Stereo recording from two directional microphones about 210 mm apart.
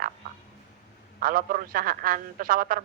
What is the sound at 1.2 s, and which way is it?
Speech, 40° right (ahead or behind).